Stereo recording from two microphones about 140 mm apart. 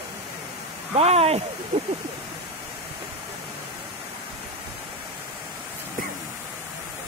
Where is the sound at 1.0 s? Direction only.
45° right (ahead or behind).